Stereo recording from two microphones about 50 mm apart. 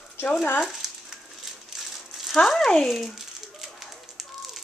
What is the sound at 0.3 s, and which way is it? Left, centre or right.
Speech, left.